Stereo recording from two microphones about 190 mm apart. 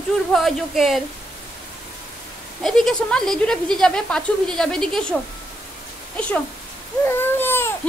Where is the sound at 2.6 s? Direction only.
Centre (ahead or behind).